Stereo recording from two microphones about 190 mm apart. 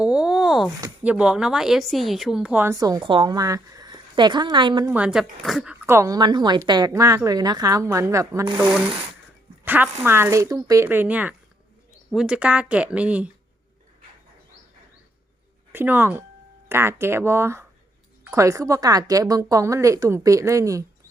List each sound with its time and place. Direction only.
0.0 s a sound: 5° right (ahead or behind)
1.0 s speech: 5° right (ahead or behind); by 4.9 s 25° right (ahead or behind)
4.9 s speech: 5° right (ahead or behind)
5.8 s speech: 15° right (ahead or behind)
9.6 s speech: 10° right (ahead or behind)
15.7 s speech: 10° right (ahead or behind)